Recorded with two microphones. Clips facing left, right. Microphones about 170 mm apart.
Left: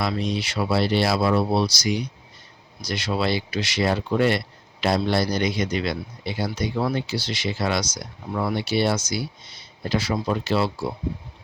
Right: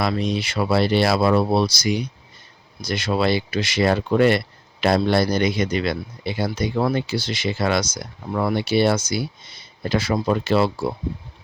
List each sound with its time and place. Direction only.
0.0 s speech: 55° right (ahead or behind)